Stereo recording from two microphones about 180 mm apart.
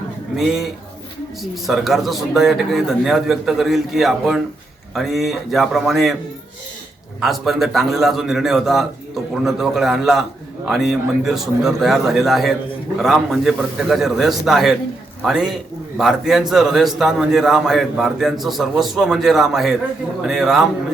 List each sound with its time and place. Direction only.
0.3 s a man's voice: centre (ahead or behind)
7.2 s a man's voice: centre (ahead or behind)